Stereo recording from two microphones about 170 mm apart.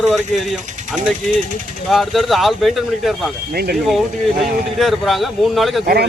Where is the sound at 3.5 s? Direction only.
65° right (ahead or behind).